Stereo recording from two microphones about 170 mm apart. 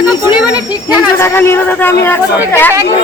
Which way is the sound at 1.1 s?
15° left (ahead or behind).